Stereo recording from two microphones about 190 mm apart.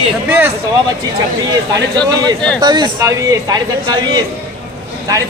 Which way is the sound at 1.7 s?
20° right (ahead or behind).